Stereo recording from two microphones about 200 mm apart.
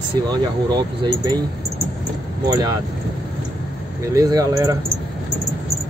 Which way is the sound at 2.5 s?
20° right (ahead or behind).